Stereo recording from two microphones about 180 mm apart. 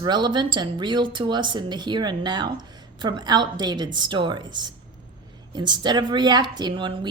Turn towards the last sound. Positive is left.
turn(degrees=-25)  # may be behind; listen again after turning